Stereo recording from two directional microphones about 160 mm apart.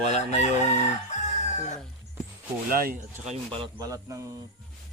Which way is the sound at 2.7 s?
65° right (ahead or behind).